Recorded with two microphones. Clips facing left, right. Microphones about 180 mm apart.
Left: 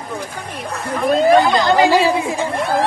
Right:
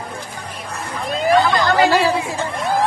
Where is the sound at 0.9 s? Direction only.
60° left (ahead or behind).